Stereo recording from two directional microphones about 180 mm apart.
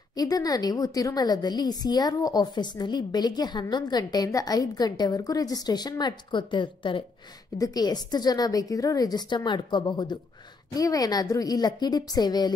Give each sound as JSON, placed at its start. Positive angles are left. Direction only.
{"t": 0.1, "sound": "a woman's voice", "side_deg": 20}